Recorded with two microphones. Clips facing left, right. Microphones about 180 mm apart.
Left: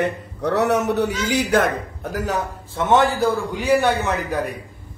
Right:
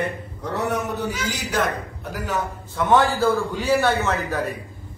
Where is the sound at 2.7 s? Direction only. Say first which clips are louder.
Left 1 dB; 25° left (ahead or behind).